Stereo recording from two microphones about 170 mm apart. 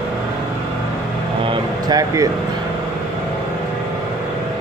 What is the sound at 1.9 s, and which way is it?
Speech, 20° right (ahead or behind).